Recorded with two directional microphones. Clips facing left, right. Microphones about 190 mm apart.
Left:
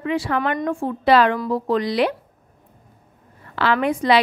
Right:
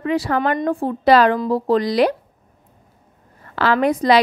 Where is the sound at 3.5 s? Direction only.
40° right (ahead or behind).